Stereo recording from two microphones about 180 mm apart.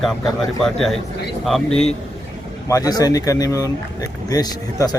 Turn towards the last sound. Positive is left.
turn(degrees=20)  # may be behind; listen again after turning